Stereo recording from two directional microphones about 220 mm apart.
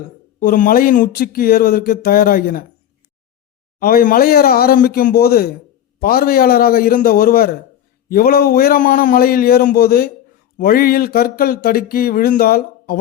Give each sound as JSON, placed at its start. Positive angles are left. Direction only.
{"t": 0.3, "sound": "speech", "side_deg": 40}
{"t": 3.8, "sound": "speech", "side_deg": 40}